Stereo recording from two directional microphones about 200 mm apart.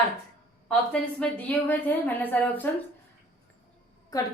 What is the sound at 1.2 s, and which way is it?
A woman's voice, 10° left (ahead or behind).